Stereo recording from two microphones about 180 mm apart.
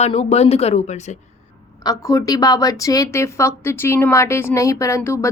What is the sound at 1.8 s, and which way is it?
A woman's voice, 20° left (ahead or behind).